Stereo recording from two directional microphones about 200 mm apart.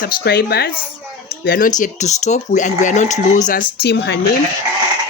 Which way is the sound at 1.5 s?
45° left (ahead or behind).